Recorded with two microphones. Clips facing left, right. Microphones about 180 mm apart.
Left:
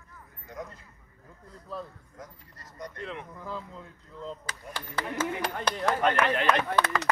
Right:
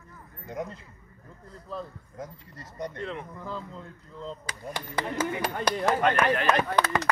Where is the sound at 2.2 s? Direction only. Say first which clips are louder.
Right 7 dB; 25° right (ahead or behind).